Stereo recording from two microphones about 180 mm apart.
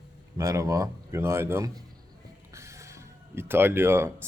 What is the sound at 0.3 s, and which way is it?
A man's voice, 20° right (ahead or behind).